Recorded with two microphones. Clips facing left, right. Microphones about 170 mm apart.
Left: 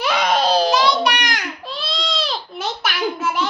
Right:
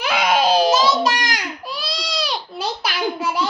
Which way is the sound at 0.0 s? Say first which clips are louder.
Even; 5° right (ahead or behind).